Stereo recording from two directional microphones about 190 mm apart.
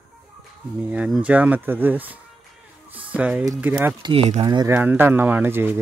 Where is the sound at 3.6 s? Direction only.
10° right (ahead or behind).